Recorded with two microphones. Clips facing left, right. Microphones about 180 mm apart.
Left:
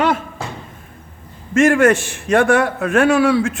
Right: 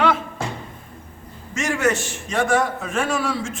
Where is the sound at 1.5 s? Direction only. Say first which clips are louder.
Left 9 dB; 55° left (ahead or behind).